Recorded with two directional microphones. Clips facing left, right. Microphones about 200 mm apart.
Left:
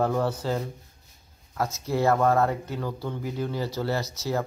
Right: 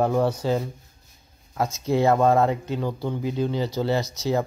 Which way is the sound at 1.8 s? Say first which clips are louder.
Right 3 dB; 20° right (ahead or behind).